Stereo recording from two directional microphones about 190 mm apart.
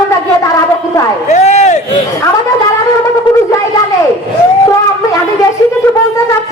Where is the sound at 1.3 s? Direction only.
35° left (ahead or behind).